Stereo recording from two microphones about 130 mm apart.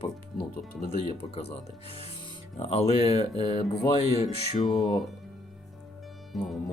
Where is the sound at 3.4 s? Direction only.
55° left (ahead or behind).